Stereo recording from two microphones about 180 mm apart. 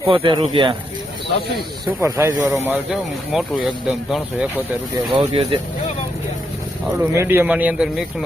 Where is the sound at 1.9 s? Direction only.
15° right (ahead or behind).